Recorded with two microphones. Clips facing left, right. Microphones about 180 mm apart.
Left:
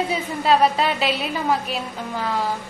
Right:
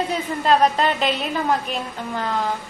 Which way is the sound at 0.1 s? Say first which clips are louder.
Right 1 dB; 5° left (ahead or behind).